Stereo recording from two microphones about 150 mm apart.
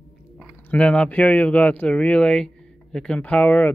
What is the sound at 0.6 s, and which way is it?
Speech, 10° left (ahead or behind).